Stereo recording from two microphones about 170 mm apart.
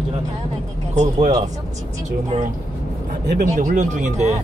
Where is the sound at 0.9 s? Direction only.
45° right (ahead or behind).